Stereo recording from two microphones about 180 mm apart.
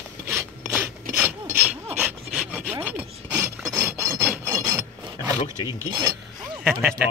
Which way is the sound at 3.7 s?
15° right (ahead or behind).